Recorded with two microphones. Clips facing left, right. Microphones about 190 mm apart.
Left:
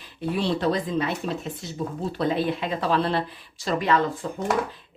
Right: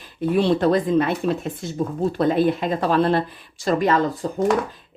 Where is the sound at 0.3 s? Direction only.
50° right (ahead or behind).